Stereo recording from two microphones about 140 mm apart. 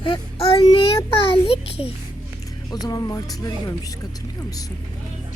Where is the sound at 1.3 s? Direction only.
40° left (ahead or behind).